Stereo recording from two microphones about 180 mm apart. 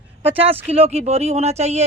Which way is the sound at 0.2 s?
30° right (ahead or behind).